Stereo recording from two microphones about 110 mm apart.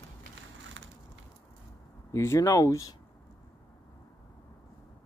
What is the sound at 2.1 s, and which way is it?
Speech, 25° left (ahead or behind).